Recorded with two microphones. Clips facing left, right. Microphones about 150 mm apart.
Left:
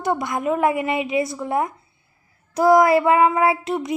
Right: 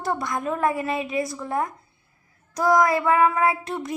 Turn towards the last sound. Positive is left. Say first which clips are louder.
# left 4 dB
turn(degrees=20)  # may be behind; listen again after turning